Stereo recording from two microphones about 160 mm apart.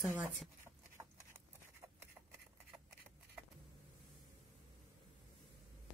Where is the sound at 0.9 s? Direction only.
15° right (ahead or behind).